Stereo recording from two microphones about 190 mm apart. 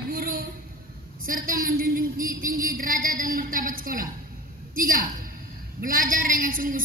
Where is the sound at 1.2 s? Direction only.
50° right (ahead or behind).